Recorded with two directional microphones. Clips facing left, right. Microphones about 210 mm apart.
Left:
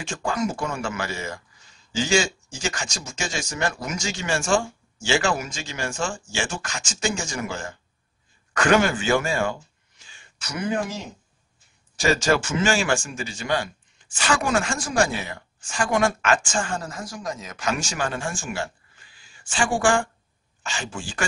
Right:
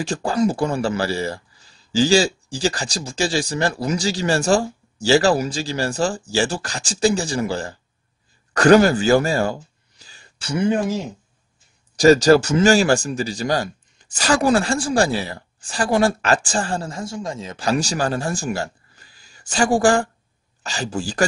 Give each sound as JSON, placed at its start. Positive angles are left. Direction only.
{"t": 0.0, "sound": "speech", "side_deg": -35}
{"t": 12.0, "sound": "speech", "side_deg": -40}